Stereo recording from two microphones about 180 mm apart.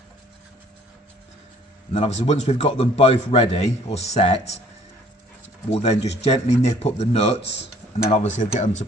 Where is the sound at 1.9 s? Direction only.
40° left (ahead or behind).